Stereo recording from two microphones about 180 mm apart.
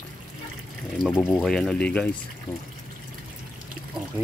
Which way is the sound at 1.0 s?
5° right (ahead or behind).